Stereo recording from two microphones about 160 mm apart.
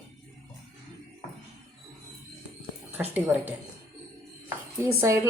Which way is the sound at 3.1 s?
10° right (ahead or behind).